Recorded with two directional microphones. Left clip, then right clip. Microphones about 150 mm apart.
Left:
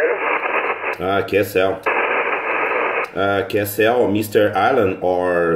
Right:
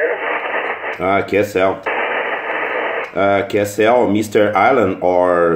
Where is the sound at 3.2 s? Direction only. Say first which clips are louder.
Right 6 dB; 15° right (ahead or behind).